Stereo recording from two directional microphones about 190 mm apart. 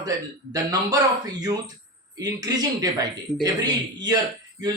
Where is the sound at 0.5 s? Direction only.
20° right (ahead or behind).